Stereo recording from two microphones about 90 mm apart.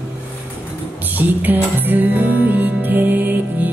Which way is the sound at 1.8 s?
20° right (ahead or behind).